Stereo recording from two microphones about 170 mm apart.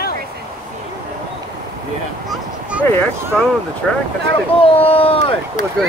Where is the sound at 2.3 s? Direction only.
5° right (ahead or behind).